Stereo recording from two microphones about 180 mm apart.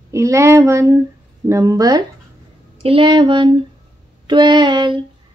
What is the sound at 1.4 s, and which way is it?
Speech, 20° right (ahead or behind).